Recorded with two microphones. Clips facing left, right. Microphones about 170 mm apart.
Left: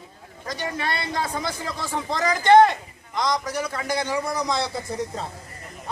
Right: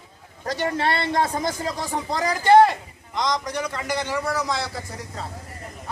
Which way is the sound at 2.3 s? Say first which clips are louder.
Even; 5° right (ahead or behind).